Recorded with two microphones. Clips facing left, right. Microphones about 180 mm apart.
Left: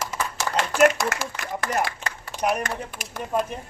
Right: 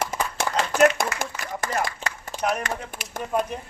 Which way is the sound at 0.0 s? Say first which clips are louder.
Right 2 dB; 60° right (ahead or behind).